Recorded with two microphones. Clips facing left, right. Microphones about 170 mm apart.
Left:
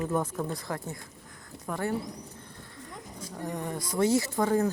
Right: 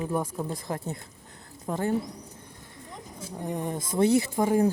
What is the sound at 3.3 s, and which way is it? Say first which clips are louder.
Speech: right 3 dB; 15° right (ahead or behind).